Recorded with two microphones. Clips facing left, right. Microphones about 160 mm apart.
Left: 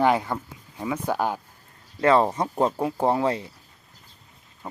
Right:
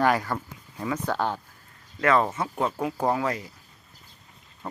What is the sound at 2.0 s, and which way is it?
Speech, 30° left (ahead or behind).